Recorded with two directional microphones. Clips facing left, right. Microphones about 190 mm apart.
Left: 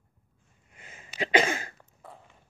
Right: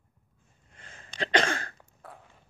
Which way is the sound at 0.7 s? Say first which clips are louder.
Left 1 dB; 10° left (ahead or behind).